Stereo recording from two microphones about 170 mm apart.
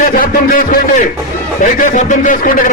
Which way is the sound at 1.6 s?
50° left (ahead or behind).